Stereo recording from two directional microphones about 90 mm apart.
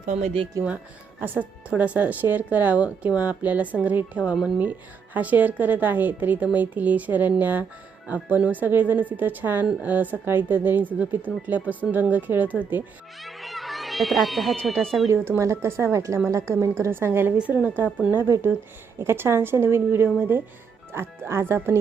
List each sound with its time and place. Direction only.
0.6 s speech: 35° right (ahead or behind)
1.2 s a woman's voice: 20° right (ahead or behind)
13.2 s speech: centre (ahead or behind)
15.1 s speech: 25° right (ahead or behind)